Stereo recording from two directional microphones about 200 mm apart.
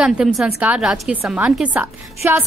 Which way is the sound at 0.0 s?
5° right (ahead or behind).